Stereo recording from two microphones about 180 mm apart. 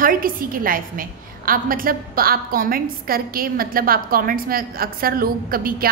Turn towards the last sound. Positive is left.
turn(degrees=-55)  # may be behind; listen again after turning